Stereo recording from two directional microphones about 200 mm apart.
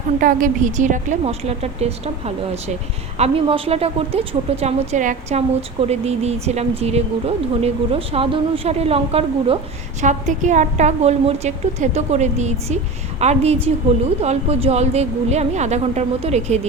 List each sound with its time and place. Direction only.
0.2 s a woman's voice: 40° right (ahead or behind)